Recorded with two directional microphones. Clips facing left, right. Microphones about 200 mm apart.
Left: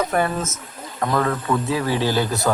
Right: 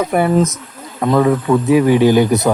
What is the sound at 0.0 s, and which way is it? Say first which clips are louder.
Speech: right 8 dB; 10° right (ahead or behind).